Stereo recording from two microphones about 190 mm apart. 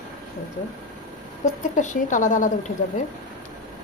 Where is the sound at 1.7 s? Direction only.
40° left (ahead or behind).